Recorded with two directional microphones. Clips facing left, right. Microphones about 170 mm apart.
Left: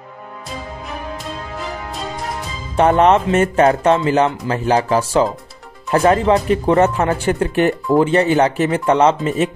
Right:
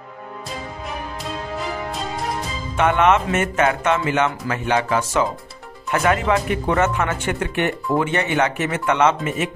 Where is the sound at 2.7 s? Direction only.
35° left (ahead or behind).